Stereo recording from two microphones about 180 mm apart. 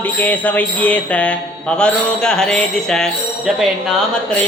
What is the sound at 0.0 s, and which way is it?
Speech, 10° left (ahead or behind).